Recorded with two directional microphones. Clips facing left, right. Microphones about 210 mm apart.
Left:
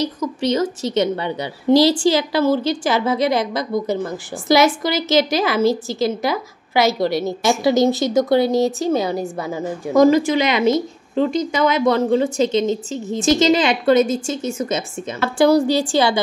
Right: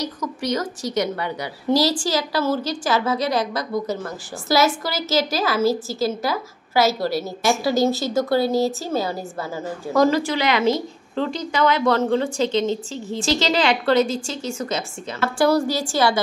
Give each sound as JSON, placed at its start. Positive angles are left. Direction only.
{"t": 0.0, "sound": "a woman's voice", "side_deg": 25}